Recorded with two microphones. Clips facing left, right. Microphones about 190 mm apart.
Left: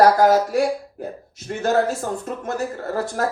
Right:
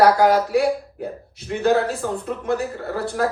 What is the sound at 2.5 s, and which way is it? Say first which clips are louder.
Speech: right 2 dB; 45° left (ahead or behind).